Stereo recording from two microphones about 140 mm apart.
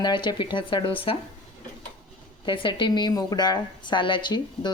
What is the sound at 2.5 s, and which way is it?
A woman's voice, 35° left (ahead or behind).